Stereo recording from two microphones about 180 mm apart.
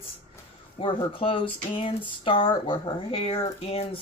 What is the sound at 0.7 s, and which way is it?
Speech, 30° left (ahead or behind).